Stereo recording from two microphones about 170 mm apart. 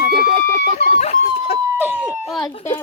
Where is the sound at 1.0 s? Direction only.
40° left (ahead or behind).